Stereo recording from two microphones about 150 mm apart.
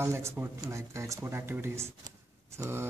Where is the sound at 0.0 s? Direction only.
15° right (ahead or behind).